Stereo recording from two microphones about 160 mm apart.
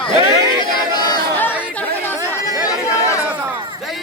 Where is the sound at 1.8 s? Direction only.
10° left (ahead or behind).